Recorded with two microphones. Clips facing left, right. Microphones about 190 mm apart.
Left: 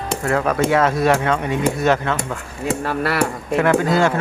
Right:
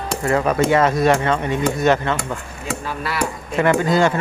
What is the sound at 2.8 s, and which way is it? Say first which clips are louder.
Speech: left 3 dB; 65° left (ahead or behind).